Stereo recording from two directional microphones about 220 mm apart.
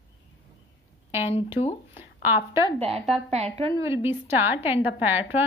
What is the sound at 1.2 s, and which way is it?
Speech, 25° left (ahead or behind).